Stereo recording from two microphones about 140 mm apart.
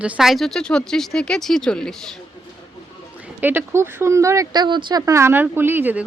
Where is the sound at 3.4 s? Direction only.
15° right (ahead or behind).